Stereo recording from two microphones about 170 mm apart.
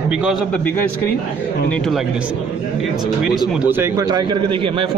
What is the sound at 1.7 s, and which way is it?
Speech, 5° left (ahead or behind).